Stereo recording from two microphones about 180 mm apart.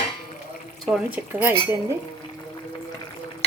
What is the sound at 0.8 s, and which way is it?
Speech, 5° right (ahead or behind).